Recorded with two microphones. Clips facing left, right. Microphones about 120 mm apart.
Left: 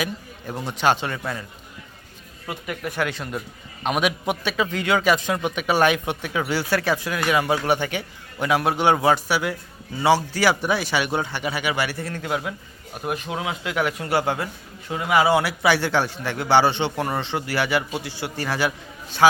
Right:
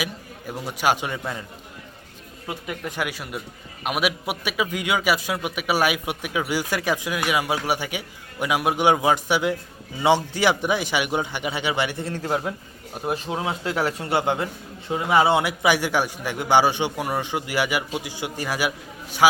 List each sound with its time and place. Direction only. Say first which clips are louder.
0.0 s a man's voice: left 2 dB; 10° right (ahead or behind)
2.5 s a man's voice: left 1 dB; 20° right (ahead or behind)